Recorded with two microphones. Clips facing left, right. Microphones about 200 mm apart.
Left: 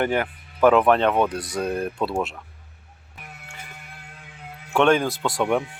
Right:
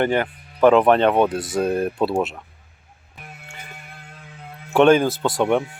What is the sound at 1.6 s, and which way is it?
Speech, 5° right (ahead or behind).